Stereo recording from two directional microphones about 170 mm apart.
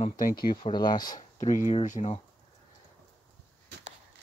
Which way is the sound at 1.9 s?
45° left (ahead or behind).